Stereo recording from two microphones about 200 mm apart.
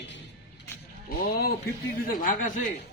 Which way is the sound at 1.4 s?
50° left (ahead or behind).